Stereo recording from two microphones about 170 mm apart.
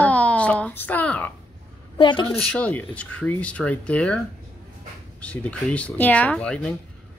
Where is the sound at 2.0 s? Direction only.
30° left (ahead or behind).